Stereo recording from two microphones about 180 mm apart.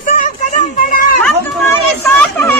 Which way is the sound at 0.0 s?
45° left (ahead or behind).